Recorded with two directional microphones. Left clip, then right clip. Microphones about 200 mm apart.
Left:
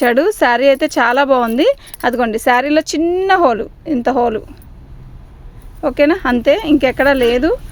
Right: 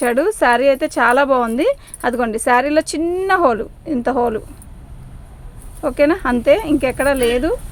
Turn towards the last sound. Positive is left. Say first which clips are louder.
# left 4 dB
turn(degrees=50)  # may be behind; listen again after turning